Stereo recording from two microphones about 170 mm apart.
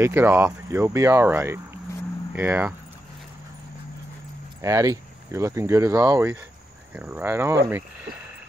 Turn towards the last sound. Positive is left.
turn(degrees=-15)  # may be behind; listen again after turning